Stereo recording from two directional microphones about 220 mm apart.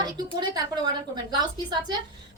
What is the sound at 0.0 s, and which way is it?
A woman's voice, 20° right (ahead or behind).